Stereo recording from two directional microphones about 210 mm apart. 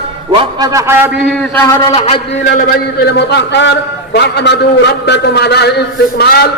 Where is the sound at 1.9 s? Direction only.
30° left (ahead or behind).